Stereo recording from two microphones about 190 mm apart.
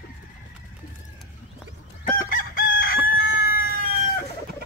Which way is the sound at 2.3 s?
45° left (ahead or behind).